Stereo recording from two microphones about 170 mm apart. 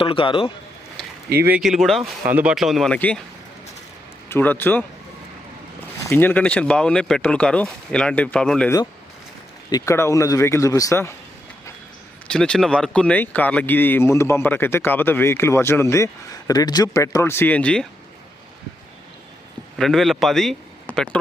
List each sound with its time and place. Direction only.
0.0 s speech: 30° left (ahead or behind)
1.4 s speech: 10° right (ahead or behind); by 3.2 s 5° left (ahead or behind)
4.3 s speech: 10° left (ahead or behind)
6.0 s speech: 15° left (ahead or behind)
9.6 s a man's voice: 20° left (ahead or behind)
12.3 s speech: 5° left (ahead or behind)
19.8 s speech: centre (ahead or behind)